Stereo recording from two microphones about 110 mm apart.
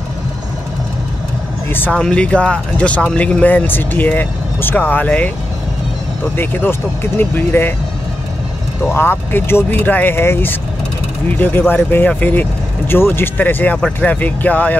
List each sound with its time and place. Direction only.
1.7 s speech: 20° left (ahead or behind)
6.3 s speech: 15° left (ahead or behind)
8.8 s speech: 20° left (ahead or behind)